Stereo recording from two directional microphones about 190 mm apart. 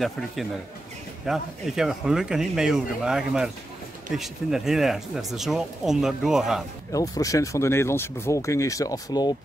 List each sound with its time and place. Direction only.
1.2 s speech: centre (ahead or behind)
6.9 s speech: 20° left (ahead or behind)